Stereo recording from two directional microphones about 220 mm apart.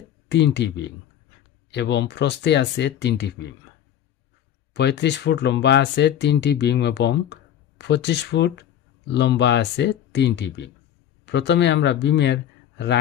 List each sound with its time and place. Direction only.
0.3 s speech: 50° left (ahead or behind)
4.7 s speech: 50° left (ahead or behind)